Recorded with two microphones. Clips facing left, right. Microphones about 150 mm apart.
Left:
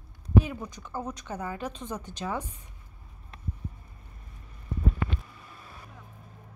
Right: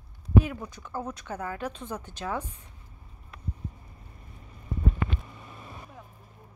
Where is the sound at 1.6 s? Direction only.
5° right (ahead or behind).